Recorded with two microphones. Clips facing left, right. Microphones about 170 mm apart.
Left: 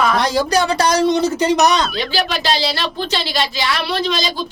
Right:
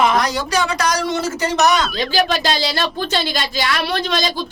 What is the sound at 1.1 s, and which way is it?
Speech, 20° left (ahead or behind).